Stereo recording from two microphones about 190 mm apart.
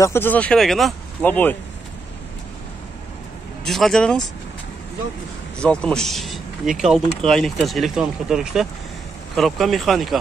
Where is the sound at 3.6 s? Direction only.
Centre (ahead or behind).